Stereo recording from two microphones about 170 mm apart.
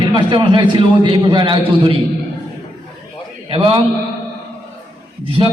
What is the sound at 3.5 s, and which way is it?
Speech, 30° right (ahead or behind).